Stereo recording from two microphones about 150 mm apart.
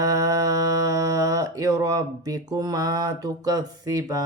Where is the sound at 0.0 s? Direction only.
20° right (ahead or behind).